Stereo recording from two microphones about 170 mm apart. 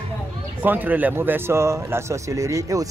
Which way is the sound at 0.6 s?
10° right (ahead or behind).